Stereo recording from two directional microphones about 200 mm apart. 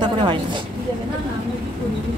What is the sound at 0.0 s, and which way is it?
Speech, 25° right (ahead or behind).